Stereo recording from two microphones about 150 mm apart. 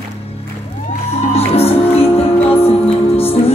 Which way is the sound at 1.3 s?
40° left (ahead or behind).